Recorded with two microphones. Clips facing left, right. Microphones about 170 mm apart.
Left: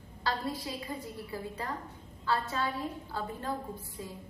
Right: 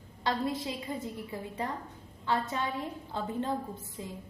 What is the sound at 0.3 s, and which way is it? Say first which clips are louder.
A woman's voice: right 3 dB; 20° right (ahead or behind).